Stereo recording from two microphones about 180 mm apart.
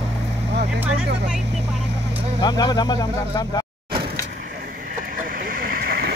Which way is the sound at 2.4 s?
20° left (ahead or behind).